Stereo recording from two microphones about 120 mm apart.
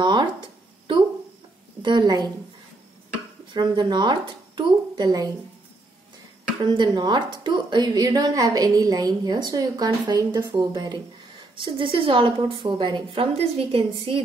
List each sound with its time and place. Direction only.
0.0 s a sound: 40° right (ahead or behind)
1.8 s a woman's voice: 40° right (ahead or behind)
3.5 s a woman's voice: 40° right (ahead or behind)
6.7 s a woman's voice: 40° right (ahead or behind)